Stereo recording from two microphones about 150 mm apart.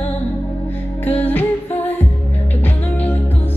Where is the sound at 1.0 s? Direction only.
10° left (ahead or behind).